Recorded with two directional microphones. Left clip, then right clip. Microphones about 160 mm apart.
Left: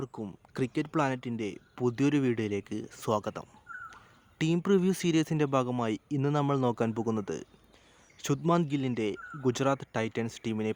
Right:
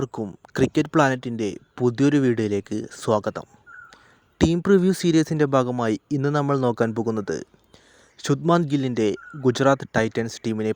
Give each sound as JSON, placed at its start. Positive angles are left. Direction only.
{"t": 0.0, "sound": "speech", "side_deg": -40}